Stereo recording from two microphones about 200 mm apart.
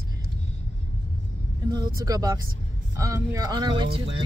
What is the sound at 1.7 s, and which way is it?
Speech, 20° right (ahead or behind).